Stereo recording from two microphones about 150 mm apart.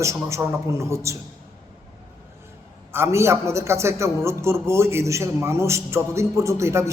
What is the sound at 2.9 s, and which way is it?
A man's voice, 15° right (ahead or behind).